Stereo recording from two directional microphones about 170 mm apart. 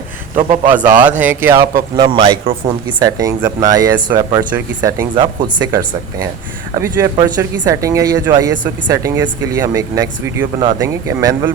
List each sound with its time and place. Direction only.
0.3 s a man's voice: 45° right (ahead or behind)
0.7 s speech: 10° right (ahead or behind)
2.0 s speech: 35° right (ahead or behind); by 5.0 s 15° right (ahead or behind)
5.1 s speech: 25° right (ahead or behind)